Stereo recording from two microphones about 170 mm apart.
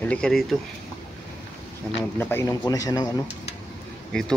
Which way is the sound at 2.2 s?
15° left (ahead or behind).